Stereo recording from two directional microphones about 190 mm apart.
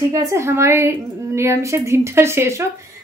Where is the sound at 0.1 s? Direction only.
15° right (ahead or behind).